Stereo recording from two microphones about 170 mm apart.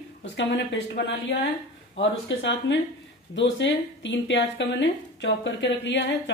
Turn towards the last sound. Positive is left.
turn(degrees=90)